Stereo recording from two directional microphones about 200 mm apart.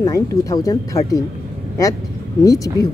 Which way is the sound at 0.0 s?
15° left (ahead or behind).